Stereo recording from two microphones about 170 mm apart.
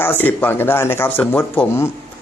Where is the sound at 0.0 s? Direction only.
10° left (ahead or behind).